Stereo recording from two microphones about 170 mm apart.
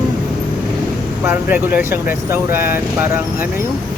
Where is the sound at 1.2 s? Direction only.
10° right (ahead or behind).